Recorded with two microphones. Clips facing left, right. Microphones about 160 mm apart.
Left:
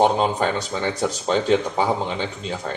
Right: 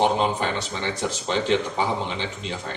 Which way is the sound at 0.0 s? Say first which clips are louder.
Left 3 dB; 40° left (ahead or behind).